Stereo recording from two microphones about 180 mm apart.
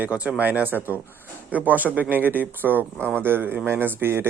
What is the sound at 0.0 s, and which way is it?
Speech, 10° right (ahead or behind).